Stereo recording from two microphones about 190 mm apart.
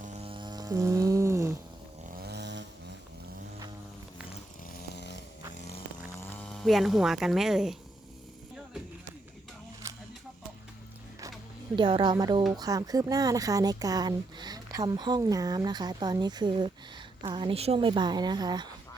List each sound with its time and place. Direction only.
0.0 s music: 35° right (ahead or behind); by 1.5 s 15° right (ahead or behind)
2.1 s a sound: 60° right (ahead or behind)
4.7 s dog: 60° left (ahead or behind)
6.1 s speech: 10° left (ahead or behind)
9.8 s a sound: 15° right (ahead or behind)
11.8 s speech: 25° right (ahead or behind)